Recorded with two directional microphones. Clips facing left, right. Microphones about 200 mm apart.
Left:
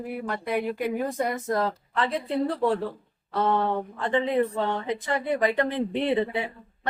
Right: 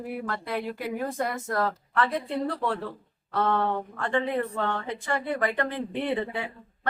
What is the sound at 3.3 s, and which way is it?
Speech, 15° left (ahead or behind).